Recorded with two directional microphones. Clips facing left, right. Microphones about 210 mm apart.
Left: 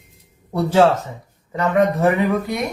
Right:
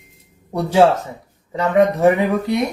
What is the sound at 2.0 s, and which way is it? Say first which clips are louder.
Speech: right 2 dB; 20° right (ahead or behind).